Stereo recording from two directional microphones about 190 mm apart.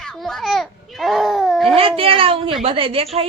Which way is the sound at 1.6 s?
30° right (ahead or behind).